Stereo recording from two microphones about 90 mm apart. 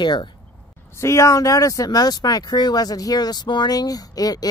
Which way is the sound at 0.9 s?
35° left (ahead or behind).